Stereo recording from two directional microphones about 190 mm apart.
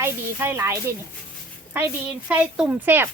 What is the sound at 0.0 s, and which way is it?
A woman's voice, 10° right (ahead or behind).